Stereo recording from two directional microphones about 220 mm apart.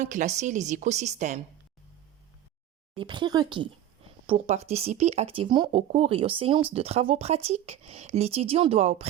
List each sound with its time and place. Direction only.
0.0 s a woman's voice: 35° right (ahead or behind)
2.9 s speech: 20° right (ahead or behind)